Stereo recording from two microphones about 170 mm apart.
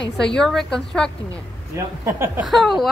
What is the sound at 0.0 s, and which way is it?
Speech, 5° left (ahead or behind).